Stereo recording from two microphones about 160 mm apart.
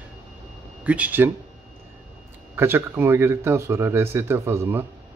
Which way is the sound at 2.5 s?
15° right (ahead or behind).